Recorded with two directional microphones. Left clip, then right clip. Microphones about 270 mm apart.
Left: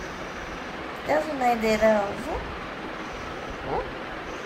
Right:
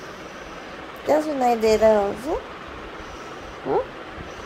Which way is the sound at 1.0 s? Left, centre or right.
Right.